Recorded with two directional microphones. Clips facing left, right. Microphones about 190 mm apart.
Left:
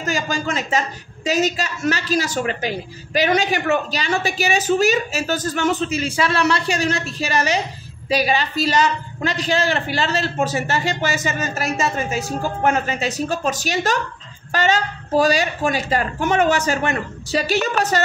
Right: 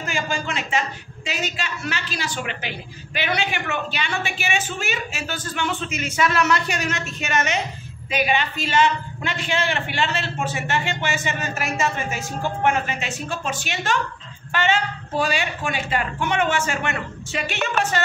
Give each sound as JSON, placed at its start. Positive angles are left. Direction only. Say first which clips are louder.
{"t": 0.0, "sound": "a woman's voice", "louder": "left 4 dB", "side_deg": 40}